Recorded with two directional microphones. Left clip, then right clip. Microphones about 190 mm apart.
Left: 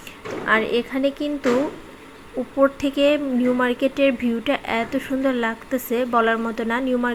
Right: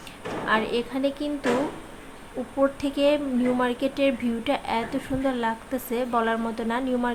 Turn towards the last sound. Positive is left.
turn(degrees=15)  # may be behind; listen again after turning